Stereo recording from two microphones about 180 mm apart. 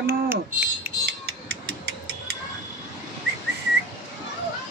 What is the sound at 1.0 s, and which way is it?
Music, 65° right (ahead or behind).